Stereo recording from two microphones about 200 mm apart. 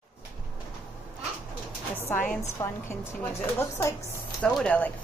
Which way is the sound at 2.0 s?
10° left (ahead or behind).